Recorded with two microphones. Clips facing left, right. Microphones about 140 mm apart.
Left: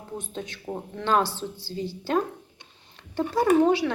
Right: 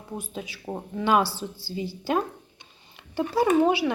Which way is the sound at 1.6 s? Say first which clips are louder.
Even; 5° right (ahead or behind).